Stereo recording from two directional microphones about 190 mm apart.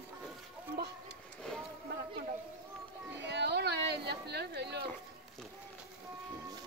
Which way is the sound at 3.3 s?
65° right (ahead or behind).